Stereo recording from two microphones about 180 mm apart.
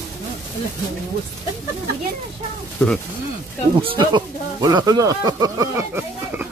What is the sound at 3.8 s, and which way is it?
Speech, 25° right (ahead or behind).